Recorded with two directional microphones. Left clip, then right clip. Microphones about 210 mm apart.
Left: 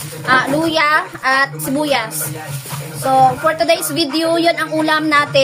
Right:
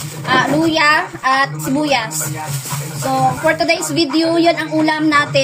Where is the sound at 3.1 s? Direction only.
10° left (ahead or behind).